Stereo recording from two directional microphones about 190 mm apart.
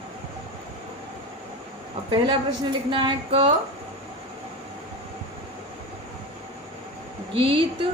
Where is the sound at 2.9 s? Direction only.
30° right (ahead or behind).